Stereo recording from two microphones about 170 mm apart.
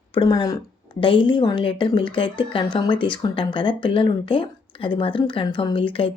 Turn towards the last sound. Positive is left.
turn(degrees=30)  # may be behind; listen again after turning